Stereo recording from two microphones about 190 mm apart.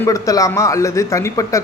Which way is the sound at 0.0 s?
15° left (ahead or behind).